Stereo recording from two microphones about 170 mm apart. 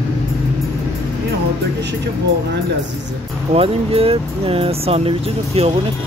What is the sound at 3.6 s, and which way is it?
Speech, 35° right (ahead or behind).